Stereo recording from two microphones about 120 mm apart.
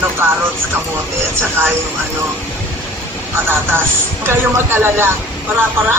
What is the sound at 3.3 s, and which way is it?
Speech, 15° right (ahead or behind).